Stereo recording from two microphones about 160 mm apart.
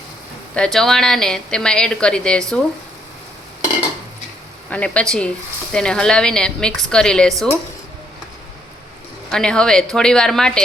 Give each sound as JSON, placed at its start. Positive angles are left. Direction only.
{"t": 0.5, "sound": "a woman's voice", "side_deg": 5}
{"t": 4.7, "sound": "a woman's voice", "side_deg": 5}
{"t": 9.3, "sound": "a woman's voice", "side_deg": 5}